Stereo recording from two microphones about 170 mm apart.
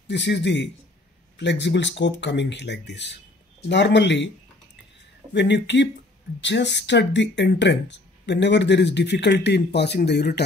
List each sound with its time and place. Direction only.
0.1 s speech: 90° left
5.3 s speech: 90° left; by 10.4 s 75° left (ahead or behind)